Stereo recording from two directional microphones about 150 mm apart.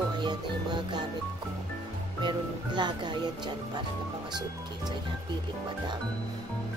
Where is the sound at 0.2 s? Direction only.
30° right (ahead or behind).